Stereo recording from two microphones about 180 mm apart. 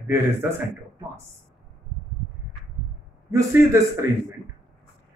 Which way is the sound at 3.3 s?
15° right (ahead or behind).